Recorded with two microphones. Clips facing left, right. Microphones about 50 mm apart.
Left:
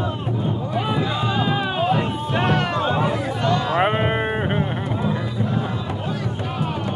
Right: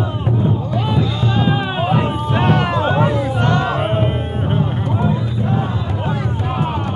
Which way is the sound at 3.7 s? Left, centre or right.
Left.